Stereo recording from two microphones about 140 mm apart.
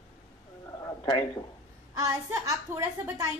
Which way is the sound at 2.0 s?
25° right (ahead or behind).